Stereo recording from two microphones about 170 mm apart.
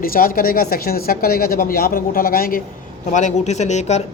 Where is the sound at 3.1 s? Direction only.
45° left (ahead or behind).